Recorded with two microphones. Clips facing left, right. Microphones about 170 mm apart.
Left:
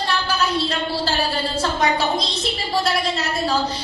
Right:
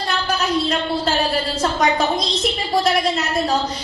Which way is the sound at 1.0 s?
30° left (ahead or behind).